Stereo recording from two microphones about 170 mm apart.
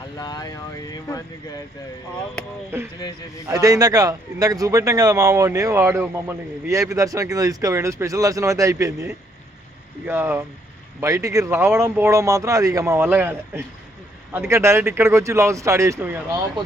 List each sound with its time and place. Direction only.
0.2 s speech: 20° left (ahead or behind)
3.4 s a man's voice: 20° right (ahead or behind)